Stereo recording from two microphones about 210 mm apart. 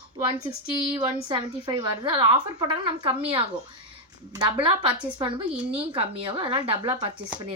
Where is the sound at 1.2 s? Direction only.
25° right (ahead or behind).